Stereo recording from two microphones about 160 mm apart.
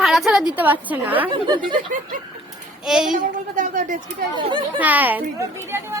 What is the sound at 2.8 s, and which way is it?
Speech, 5° right (ahead or behind).